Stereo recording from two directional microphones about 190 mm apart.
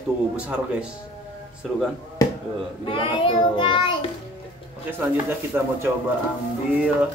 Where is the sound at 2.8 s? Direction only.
25° left (ahead or behind).